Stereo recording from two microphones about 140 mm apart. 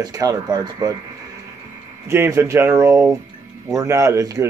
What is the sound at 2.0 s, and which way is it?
A man's voice, 15° right (ahead or behind).